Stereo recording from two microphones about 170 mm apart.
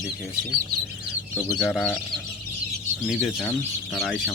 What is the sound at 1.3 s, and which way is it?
Speech, 15° left (ahead or behind).